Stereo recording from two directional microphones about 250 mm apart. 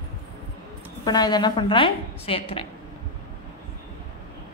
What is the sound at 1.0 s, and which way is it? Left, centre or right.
A woman's voice, centre.